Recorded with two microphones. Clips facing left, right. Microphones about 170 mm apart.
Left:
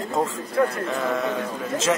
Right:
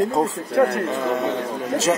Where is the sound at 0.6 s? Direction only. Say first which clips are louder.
Right 4 dB; 65° right (ahead or behind).